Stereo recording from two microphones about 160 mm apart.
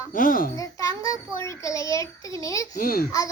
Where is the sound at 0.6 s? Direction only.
20° left (ahead or behind).